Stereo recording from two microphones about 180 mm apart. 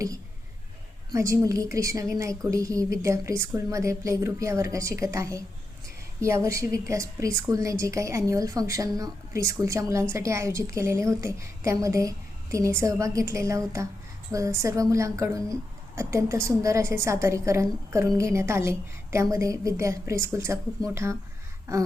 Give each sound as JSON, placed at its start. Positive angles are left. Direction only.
{"t": 1.1, "sound": "a woman's voice", "side_deg": -15}